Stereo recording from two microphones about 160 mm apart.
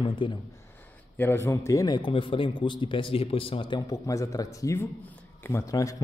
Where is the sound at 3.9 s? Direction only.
20° left (ahead or behind).